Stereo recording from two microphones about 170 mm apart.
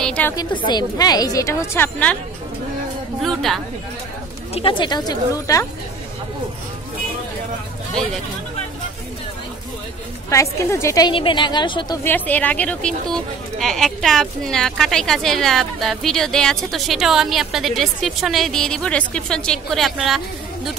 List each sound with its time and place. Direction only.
0.0 s a woman's voice: 5° left (ahead or behind)
0.4 s a woman's voice: 25° left (ahead or behind); by 2.1 s 10° left (ahead or behind)
3.2 s a woman's voice: centre (ahead or behind)
4.6 s a woman's voice: 30° left (ahead or behind)
10.3 s a woman's voice: 15° left (ahead or behind)
12.0 s a woman's voice: 10° left (ahead or behind)